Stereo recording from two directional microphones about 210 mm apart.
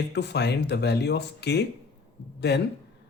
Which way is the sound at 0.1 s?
55° left (ahead or behind).